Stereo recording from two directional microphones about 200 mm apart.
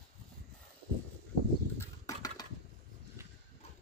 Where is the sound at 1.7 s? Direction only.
15° left (ahead or behind).